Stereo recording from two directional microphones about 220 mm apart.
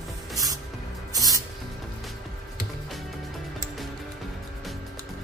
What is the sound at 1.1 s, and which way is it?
Spray, 15° right (ahead or behind).